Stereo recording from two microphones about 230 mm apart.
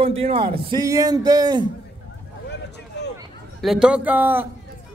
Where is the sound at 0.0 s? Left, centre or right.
Right.